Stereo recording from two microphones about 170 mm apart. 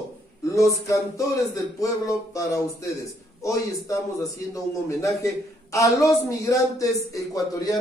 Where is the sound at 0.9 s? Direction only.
20° left (ahead or behind).